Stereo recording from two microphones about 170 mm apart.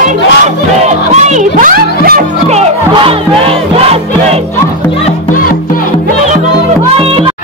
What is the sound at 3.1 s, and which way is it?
Music, 35° right (ahead or behind).